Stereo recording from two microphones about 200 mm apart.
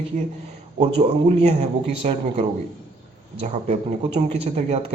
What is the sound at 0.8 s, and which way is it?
A man's voice, 30° right (ahead or behind).